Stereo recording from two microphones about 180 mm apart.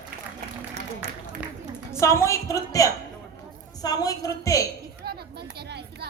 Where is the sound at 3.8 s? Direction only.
20° left (ahead or behind).